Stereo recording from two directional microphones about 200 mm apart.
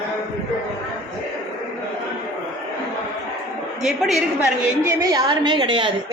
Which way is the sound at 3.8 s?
Centre (ahead or behind).